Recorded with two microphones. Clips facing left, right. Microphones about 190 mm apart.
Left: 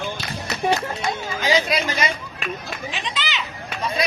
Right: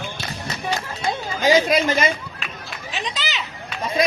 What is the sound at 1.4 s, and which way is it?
Speech, 45° right (ahead or behind).